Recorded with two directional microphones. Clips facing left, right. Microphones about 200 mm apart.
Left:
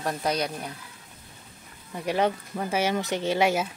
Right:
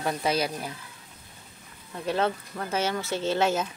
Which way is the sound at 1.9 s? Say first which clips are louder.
Left 2 dB; 15° left (ahead or behind).